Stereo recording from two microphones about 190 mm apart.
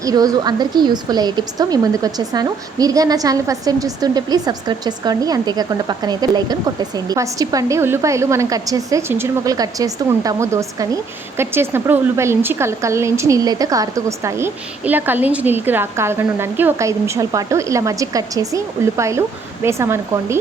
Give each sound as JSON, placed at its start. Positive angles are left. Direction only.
{"t": 0.0, "sound": "a woman's voice", "side_deg": -20}